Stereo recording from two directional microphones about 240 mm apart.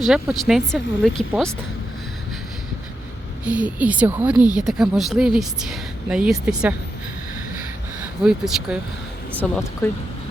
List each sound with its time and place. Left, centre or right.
0.0 s speech: centre
3.4 s speech: centre
8.2 s speech: centre